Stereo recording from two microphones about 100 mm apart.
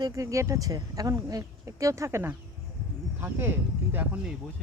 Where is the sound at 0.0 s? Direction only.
35° right (ahead or behind).